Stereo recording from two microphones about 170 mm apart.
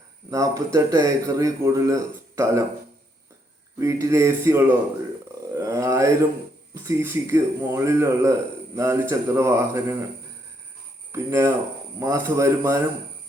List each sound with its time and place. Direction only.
0.3 s speech: 20° right (ahead or behind)
3.8 s a man's voice: 15° right (ahead or behind)
11.1 s a man's voice: 15° right (ahead or behind)